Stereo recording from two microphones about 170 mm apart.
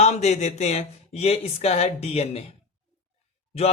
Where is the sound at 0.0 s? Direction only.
40° left (ahead or behind).